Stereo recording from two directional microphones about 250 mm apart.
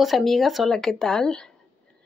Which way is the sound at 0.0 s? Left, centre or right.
Centre.